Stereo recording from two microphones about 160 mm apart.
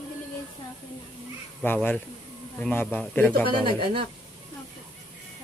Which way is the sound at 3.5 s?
30° right (ahead or behind).